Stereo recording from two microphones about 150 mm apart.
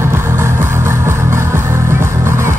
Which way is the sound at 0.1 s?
15° right (ahead or behind).